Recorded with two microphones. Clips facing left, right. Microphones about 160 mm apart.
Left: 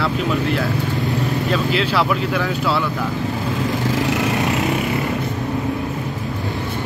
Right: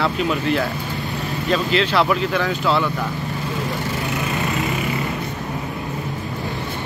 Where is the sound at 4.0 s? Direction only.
90° left.